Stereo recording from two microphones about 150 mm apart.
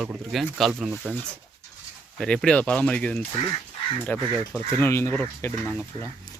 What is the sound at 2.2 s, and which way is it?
Speech, 5° left (ahead or behind).